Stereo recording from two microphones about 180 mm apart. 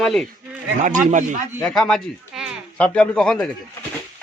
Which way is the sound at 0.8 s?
45° right (ahead or behind).